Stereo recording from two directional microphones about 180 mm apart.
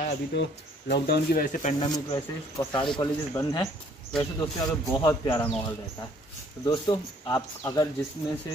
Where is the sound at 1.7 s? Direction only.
25° left (ahead or behind).